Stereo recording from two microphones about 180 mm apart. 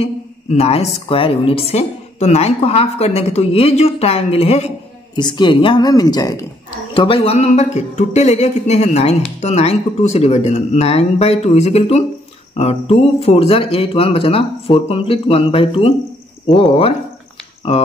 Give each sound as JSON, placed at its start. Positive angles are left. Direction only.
{"t": 0.0, "sound": "a sound", "side_deg": 35}
{"t": 0.9, "sound": "a woman's voice", "side_deg": 30}
{"t": 5.1, "sound": "a woman's voice", "side_deg": 25}